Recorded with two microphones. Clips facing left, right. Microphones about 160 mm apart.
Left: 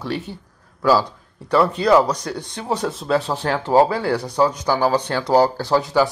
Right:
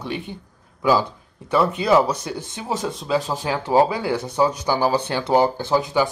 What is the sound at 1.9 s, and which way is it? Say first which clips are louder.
Speech: left 2 dB; 5° right (ahead or behind).